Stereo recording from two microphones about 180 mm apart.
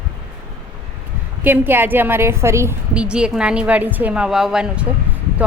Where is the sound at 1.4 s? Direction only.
10° right (ahead or behind).